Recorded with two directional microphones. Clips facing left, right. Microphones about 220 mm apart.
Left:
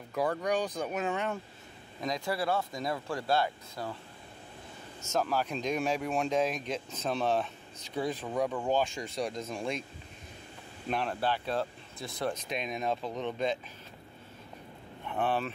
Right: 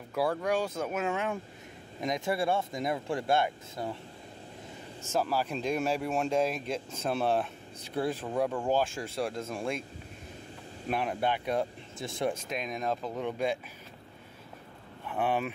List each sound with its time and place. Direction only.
0.1 s speech: 10° right (ahead or behind)
2.0 s speech: 20° right (ahead or behind)
5.2 s speech: 5° right (ahead or behind)
10.9 s speech: 10° right (ahead or behind)
12.3 s speech: centre (ahead or behind)
15.0 s speech: 10° right (ahead or behind)